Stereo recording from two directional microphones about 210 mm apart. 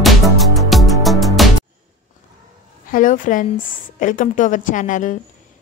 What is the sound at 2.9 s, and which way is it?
A woman's voice, 40° left (ahead or behind).